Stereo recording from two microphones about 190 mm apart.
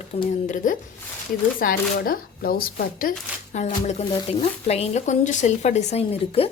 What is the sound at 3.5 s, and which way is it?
Speech, 35° left (ahead or behind).